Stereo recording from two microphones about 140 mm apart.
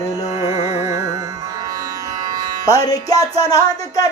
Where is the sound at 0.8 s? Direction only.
20° right (ahead or behind).